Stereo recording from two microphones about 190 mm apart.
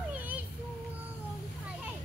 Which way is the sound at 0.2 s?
10° right (ahead or behind).